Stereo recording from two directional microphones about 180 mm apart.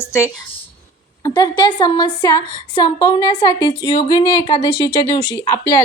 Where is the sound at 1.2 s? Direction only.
25° left (ahead or behind).